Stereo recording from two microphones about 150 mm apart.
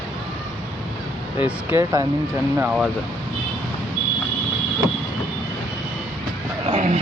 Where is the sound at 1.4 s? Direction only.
15° right (ahead or behind).